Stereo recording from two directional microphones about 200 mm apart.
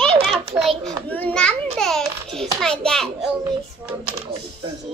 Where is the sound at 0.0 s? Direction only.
Centre (ahead or behind).